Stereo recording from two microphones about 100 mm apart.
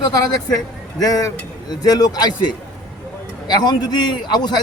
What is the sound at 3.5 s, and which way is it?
Speech, 45° left (ahead or behind).